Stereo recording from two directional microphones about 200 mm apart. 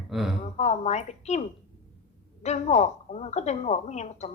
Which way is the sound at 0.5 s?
35° left (ahead or behind).